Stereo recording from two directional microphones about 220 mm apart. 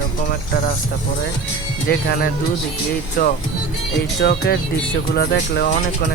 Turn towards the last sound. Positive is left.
turn(degrees=45)  # may be behind; listen again after turning